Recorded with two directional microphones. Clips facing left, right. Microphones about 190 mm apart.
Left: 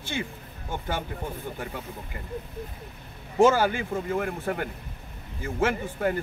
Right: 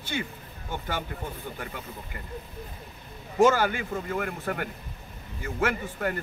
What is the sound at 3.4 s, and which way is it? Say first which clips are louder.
Speech: left 1 dB; 25° left (ahead or behind).